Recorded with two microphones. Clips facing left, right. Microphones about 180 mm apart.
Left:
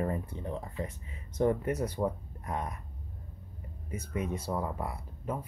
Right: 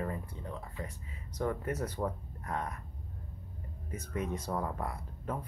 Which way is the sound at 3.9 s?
10° left (ahead or behind).